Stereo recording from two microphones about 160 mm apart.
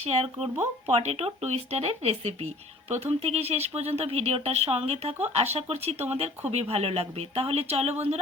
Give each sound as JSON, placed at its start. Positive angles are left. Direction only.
{"t": 0.0, "sound": "speech", "side_deg": -40}